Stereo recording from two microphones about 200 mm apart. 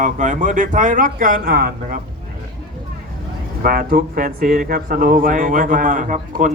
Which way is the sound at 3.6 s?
50° right (ahead or behind).